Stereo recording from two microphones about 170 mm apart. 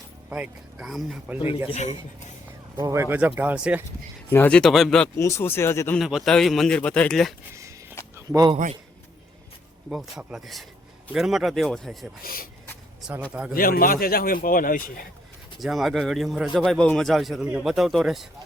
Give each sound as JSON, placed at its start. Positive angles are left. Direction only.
{"t": 0.3, "sound": "a man's voice", "side_deg": -5}
{"t": 2.7, "sound": "speech", "side_deg": -20}
{"t": 4.3, "sound": "a man's voice", "side_deg": 10}
{"t": 5.1, "sound": "speech", "side_deg": 15}
{"t": 6.0, "sound": "a man's voice", "side_deg": 0}
{"t": 7.5, "sound": "a sound", "side_deg": -15}
{"t": 9.9, "sound": "a man's voice", "side_deg": -5}
{"t": 12.2, "sound": "a man's voice", "side_deg": 60}
{"t": 13.5, "sound": "a man's voice", "side_deg": 60}
{"t": 15.6, "sound": "a man's voice", "side_deg": 0}